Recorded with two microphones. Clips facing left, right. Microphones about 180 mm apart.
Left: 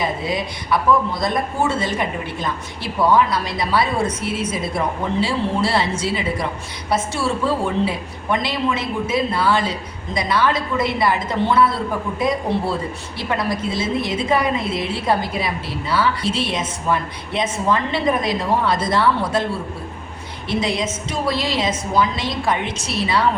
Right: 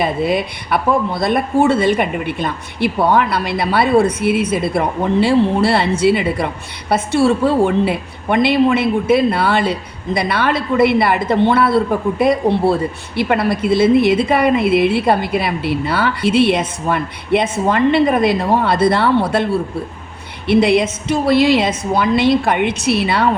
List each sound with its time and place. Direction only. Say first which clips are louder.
0.0 s a woman's voice: right 6 dB; 60° right (ahead or behind)
20.5 s a woman's voice: right 9 dB; 65° right (ahead or behind)